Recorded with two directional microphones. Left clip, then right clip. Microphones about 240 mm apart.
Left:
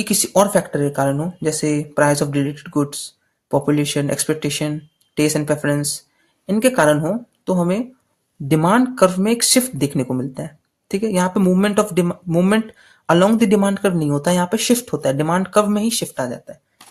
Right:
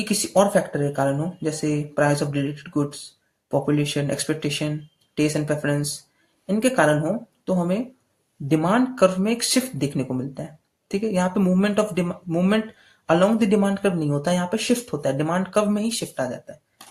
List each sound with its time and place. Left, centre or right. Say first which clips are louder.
0.0 s speech: left 3 dB; left